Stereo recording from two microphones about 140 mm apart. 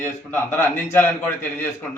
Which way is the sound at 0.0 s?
15° left (ahead or behind).